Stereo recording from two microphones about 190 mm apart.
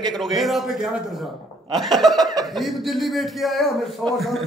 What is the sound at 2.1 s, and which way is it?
Speech, 20° right (ahead or behind).